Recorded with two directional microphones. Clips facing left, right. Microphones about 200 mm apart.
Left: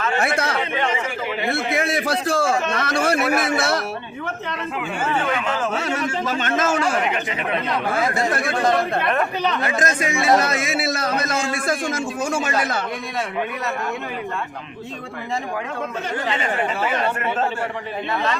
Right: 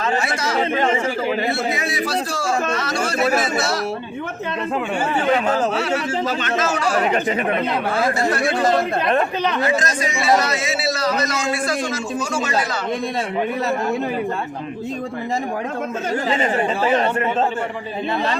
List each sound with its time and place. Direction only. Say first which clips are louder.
0.2 s speech: even; 60° left (ahead or behind)
0.7 s speech: right 4 dB; 40° right (ahead or behind)
1.5 s a man's voice: even; 55° left (ahead or behind)
2.7 s chatter: left 1 dB; 60° left (ahead or behind)
5.1 s speech: right 6 dB; 35° right (ahead or behind)
6.4 s a man's voice: even; 50° left (ahead or behind)
7.0 s speech: right 5 dB; 40° right (ahead or behind)
9.8 s a man's voice: left 1 dB; 55° left (ahead or behind)
16.3 s speech: right 4 dB; 35° right (ahead or behind)